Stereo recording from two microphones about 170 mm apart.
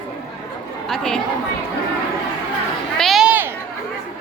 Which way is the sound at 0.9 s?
Centre (ahead or behind).